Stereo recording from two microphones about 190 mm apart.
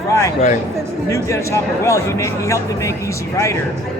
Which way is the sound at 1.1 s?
15° left (ahead or behind).